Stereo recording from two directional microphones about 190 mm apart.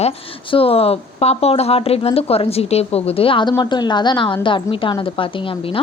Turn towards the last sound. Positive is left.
turn(degrees=25)  # may be behind; listen again after turning